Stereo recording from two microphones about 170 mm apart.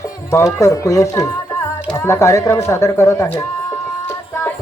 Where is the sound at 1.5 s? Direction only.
15° left (ahead or behind).